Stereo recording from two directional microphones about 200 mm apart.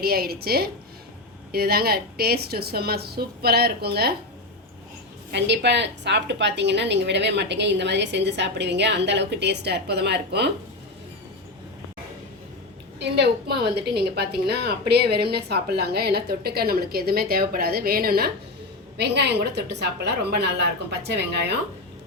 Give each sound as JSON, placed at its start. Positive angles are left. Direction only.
{"t": 0.0, "sound": "a woman's voice", "side_deg": -50}
{"t": 5.3, "sound": "a woman's voice", "side_deg": -60}
{"t": 13.0, "sound": "a woman's voice", "side_deg": -55}